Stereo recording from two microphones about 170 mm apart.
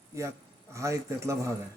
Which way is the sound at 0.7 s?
15° right (ahead or behind).